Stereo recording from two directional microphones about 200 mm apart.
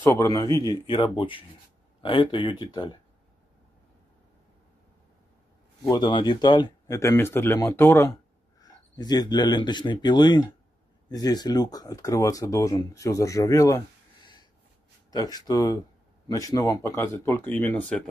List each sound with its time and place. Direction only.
0.0 s speech: 15° left (ahead or behind)
5.9 s speech: 20° left (ahead or behind)